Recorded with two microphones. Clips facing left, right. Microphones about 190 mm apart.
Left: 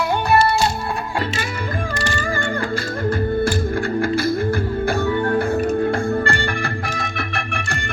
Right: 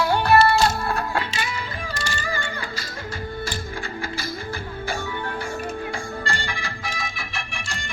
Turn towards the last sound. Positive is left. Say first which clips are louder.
# left 8 dB
turn(degrees=60)  # may be behind; listen again after turning